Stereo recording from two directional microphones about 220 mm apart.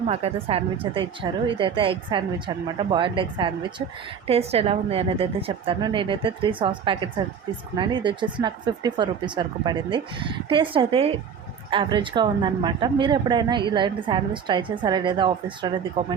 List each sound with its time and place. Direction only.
0.1 s a woman's voice: 25° right (ahead or behind)